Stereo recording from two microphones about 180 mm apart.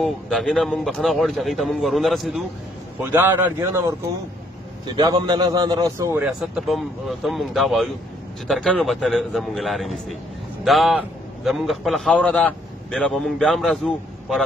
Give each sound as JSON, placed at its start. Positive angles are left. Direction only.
{"t": 0.0, "sound": "speech", "side_deg": 0}
{"t": 3.0, "sound": "a man's voice", "side_deg": -10}
{"t": 4.8, "sound": "a man's voice", "side_deg": -25}
{"t": 6.4, "sound": "a man's voice", "side_deg": 0}